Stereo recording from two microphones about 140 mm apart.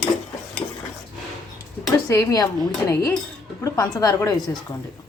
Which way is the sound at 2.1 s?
20° left (ahead or behind).